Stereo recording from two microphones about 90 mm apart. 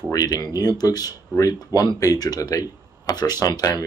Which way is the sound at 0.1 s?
45° left (ahead or behind).